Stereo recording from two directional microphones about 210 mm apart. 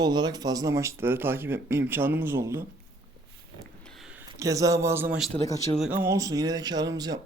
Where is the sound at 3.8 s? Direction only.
Centre (ahead or behind).